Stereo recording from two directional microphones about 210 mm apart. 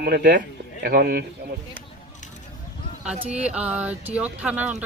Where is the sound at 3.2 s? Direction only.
5° right (ahead or behind).